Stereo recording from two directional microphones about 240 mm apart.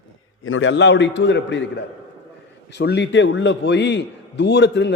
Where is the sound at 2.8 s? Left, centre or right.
Left.